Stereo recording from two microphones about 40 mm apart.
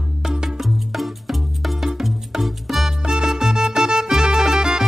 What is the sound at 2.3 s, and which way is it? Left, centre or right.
Music, centre.